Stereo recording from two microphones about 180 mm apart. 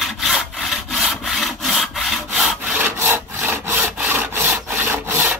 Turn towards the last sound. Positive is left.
turn(degrees=-10)  # may be behind; listen again after turning